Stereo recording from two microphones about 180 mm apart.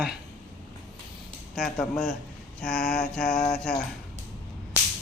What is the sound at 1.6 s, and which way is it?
Mantra, centre (ahead or behind).